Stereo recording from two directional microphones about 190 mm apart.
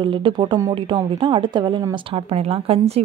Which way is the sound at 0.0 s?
25° right (ahead or behind).